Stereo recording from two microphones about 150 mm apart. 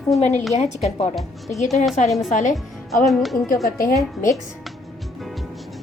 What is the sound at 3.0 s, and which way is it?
Speech, centre (ahead or behind).